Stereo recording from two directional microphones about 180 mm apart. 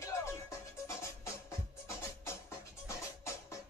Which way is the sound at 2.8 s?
15° left (ahead or behind).